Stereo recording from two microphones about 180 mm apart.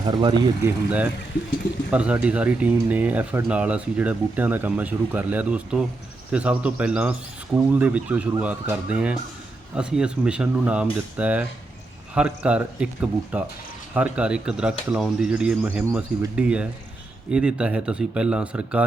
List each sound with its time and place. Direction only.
0.0 s speech: 25° right (ahead or behind)
0.6 s speech: 10° right (ahead or behind)